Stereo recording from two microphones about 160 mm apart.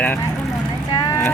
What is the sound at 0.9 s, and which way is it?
Vehicle, 20° left (ahead or behind).